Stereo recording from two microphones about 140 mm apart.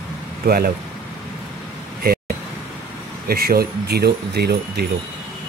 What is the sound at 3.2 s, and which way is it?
Speech, 90° right.